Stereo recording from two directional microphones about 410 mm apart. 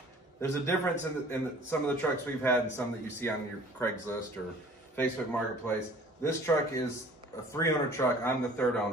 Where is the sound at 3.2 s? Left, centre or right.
Centre.